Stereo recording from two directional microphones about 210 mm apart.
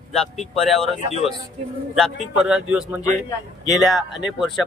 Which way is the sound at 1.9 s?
Centre (ahead or behind).